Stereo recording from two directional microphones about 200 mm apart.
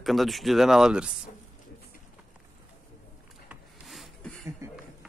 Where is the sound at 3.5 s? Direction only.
Centre (ahead or behind).